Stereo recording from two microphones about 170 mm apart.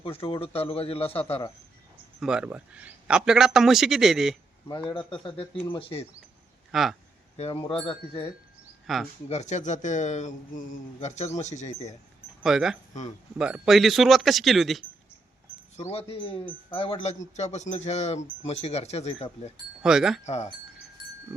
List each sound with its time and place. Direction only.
0.0 s speech: 35° left (ahead or behind)
2.2 s a man's voice: 5° right (ahead or behind)
4.7 s a man's voice: 25° left (ahead or behind)
5.7 s speech: 35° left (ahead or behind)
6.7 s speech: centre (ahead or behind)
7.3 s speech: 35° left (ahead or behind)
8.9 s a man's voice: centre (ahead or behind)
9.3 s a man's voice: 45° left (ahead or behind)
12.4 s a man's voice: centre (ahead or behind)
15.9 s speech: 35° left (ahead or behind)
19.8 s a man's voice: 5° right (ahead or behind)
20.2 s speech: 40° left (ahead or behind)